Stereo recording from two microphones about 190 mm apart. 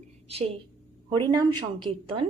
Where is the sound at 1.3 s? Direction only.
25° right (ahead or behind).